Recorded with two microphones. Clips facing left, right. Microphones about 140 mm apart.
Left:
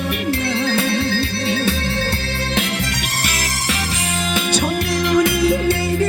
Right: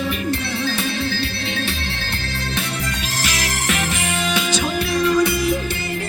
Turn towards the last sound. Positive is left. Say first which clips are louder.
# left 1 dB
turn(degrees=90)